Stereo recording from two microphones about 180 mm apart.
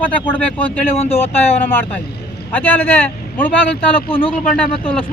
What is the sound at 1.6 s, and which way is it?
Speech, 10° left (ahead or behind).